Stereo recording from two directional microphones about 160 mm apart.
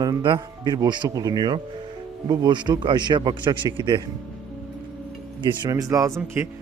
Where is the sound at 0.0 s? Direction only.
25° right (ahead or behind).